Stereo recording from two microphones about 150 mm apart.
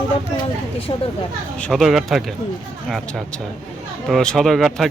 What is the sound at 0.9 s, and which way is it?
Speech, 35° left (ahead or behind).